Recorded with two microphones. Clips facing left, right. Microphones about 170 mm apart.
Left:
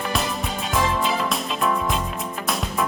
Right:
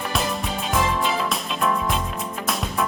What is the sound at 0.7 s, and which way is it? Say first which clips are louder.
Music: even; centre (ahead or behind).